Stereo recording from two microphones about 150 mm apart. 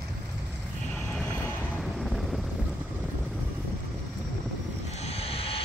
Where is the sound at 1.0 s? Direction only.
5° left (ahead or behind).